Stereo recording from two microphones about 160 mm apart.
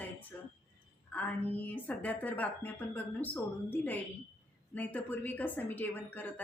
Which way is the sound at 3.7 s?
10° left (ahead or behind).